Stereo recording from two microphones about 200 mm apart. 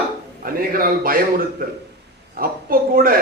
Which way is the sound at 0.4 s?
45° right (ahead or behind).